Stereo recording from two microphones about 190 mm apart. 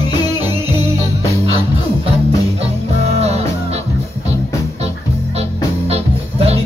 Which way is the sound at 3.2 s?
35° right (ahead or behind).